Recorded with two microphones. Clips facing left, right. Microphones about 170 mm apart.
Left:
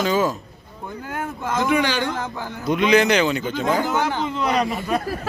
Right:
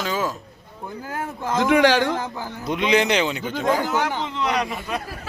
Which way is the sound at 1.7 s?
85° right.